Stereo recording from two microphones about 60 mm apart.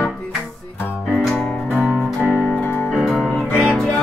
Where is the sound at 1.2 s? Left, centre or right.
Centre.